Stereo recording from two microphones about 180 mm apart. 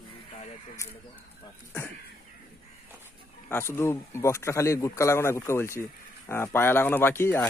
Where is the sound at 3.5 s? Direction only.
15° left (ahead or behind).